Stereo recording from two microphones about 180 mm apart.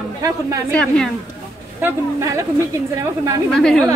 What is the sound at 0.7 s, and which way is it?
Speech, 5° left (ahead or behind).